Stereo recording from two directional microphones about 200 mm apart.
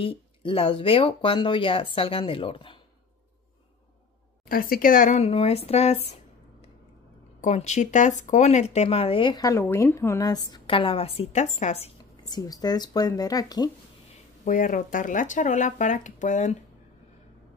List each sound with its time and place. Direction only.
0.0 s speech: 25° left (ahead or behind)
4.5 s speech: 45° left (ahead or behind)
12.3 s speech: 20° left (ahead or behind)
14.4 s speech: 40° left (ahead or behind)